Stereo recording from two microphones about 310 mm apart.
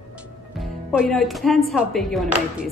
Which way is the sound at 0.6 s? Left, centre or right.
Centre.